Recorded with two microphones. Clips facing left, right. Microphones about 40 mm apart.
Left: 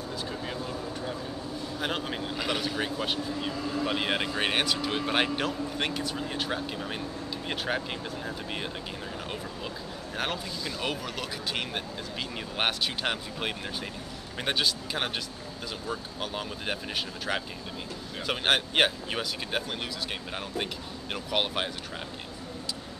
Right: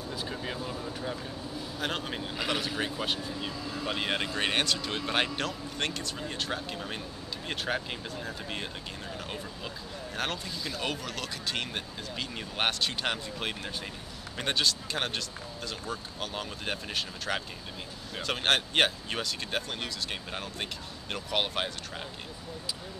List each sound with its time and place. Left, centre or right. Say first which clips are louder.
0.1 s vehicle: even; centre
1.8 s a man's voice: left 1 dB; centre
10.1 s a man's voice: left 2 dB; centre
21.1 s a man's voice: left 1 dB; centre